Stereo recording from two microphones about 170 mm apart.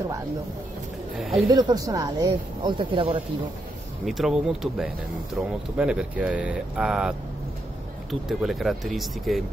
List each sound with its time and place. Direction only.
1.1 s speech: centre (ahead or behind)
1.5 s speech: 25° right (ahead or behind)
4.0 s speech: centre (ahead or behind)